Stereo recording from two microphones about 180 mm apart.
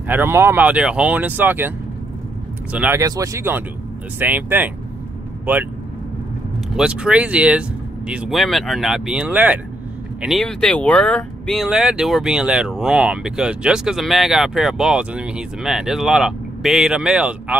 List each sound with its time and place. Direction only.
0.1 s speech: 10° right (ahead or behind)
2.7 s speech: 10° right (ahead or behind)
6.8 s speech: 5° right (ahead or behind)